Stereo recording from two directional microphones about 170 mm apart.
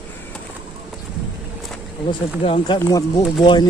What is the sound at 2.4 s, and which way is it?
Speech, 35° left (ahead or behind).